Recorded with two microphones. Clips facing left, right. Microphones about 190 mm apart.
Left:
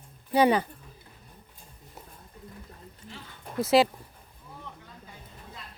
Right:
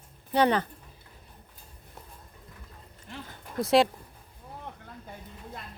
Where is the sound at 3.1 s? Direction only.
55° right (ahead or behind).